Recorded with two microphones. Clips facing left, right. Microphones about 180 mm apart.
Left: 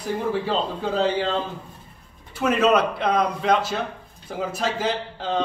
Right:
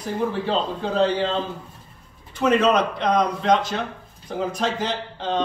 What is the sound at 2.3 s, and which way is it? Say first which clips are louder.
Speech: right 1 dB; 5° left (ahead or behind).